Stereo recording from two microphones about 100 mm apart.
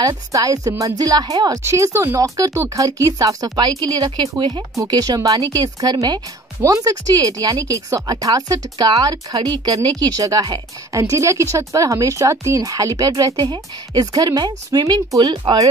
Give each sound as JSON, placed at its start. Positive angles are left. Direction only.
{"t": 0.0, "sound": "speech", "side_deg": -35}
{"t": 1.6, "sound": "speech", "side_deg": -25}